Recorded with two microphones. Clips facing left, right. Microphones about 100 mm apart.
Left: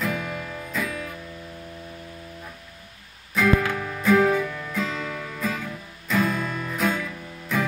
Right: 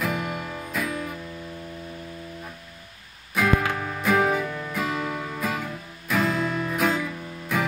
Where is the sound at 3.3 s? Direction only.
15° right (ahead or behind).